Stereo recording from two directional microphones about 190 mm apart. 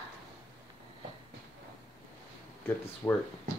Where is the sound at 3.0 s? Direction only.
15° left (ahead or behind).